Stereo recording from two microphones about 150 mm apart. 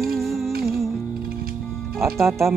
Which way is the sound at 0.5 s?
90° right.